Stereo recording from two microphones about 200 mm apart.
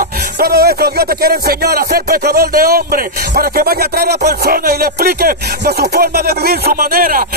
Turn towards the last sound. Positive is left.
turn(degrees=-45)  # may be behind; listen again after turning